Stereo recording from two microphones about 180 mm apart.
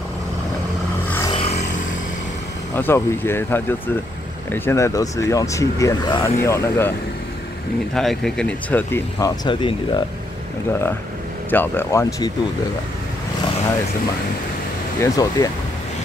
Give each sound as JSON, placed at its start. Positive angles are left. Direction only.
{"t": 1.3, "sound": "a sound", "side_deg": 40}
{"t": 2.7, "sound": "speech", "side_deg": 15}
{"t": 7.9, "sound": "speech", "side_deg": 0}
{"t": 9.2, "sound": "speech", "side_deg": 25}
{"t": 11.5, "sound": "speech", "side_deg": 10}
{"t": 15.0, "sound": "speech", "side_deg": 20}